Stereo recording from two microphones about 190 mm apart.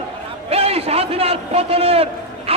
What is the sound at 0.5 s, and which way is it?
A man's voice, 30° right (ahead or behind).